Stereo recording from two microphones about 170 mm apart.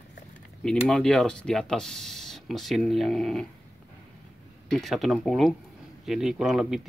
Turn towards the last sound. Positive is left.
turn(degrees=-5)  # may be behind; listen again after turning